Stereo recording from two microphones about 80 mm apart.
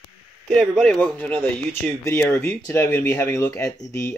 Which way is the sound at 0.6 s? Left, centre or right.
Centre.